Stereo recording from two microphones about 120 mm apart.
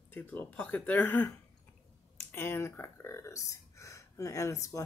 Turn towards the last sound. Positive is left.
turn(degrees=25)  # may be behind; listen again after turning